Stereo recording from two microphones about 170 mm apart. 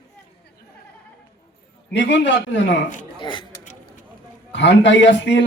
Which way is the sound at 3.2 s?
30° left (ahead or behind).